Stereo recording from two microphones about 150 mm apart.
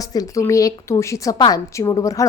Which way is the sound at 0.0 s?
25° left (ahead or behind).